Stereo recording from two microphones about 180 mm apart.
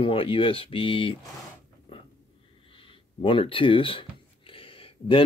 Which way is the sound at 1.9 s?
30° left (ahead or behind).